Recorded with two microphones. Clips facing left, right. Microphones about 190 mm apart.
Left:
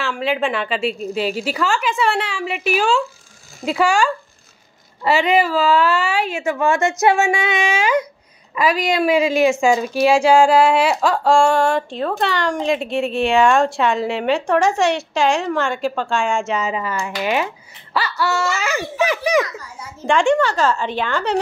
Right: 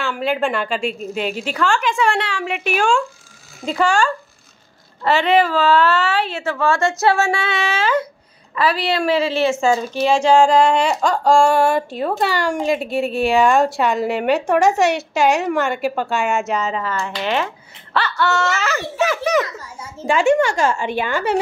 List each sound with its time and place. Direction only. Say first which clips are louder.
0.0 s a woman's voice: even; centre (ahead or behind)
16.5 s a woman's voice: even; 10° left (ahead or behind)
19.6 s a child's voice: right 1 dB; 25° right (ahead or behind)
20.1 s a woman's voice: right 1 dB; 5° right (ahead or behind)